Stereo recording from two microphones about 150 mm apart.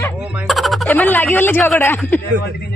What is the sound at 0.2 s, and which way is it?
Speech, 10° right (ahead or behind).